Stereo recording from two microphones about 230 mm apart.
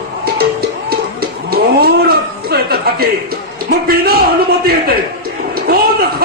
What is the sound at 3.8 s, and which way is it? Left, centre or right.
Speech, right.